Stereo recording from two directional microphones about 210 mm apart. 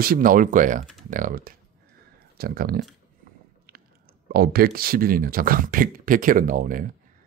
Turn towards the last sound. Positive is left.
turn(degrees=-40)  # may be behind; listen again after turning